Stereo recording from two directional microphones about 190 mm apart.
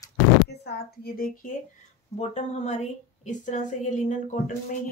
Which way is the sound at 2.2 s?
35° left (ahead or behind).